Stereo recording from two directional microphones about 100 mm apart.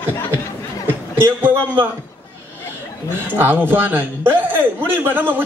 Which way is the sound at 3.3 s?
20° right (ahead or behind).